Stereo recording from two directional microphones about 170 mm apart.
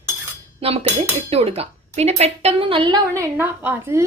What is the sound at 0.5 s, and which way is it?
Dishes, 35° right (ahead or behind).